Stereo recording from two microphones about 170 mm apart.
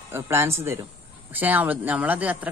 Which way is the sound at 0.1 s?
15° right (ahead or behind).